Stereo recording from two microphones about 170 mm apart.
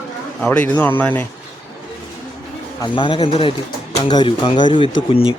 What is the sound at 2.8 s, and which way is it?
A man's voice, 30° left (ahead or behind).